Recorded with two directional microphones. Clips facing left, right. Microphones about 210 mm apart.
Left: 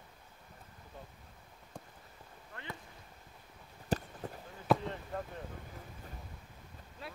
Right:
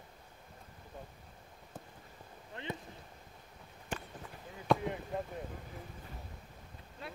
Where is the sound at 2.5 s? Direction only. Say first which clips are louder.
Right 5 dB; 20° right (ahead or behind).